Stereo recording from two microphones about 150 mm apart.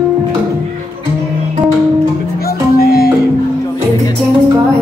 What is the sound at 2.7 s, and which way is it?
Music, 90° left.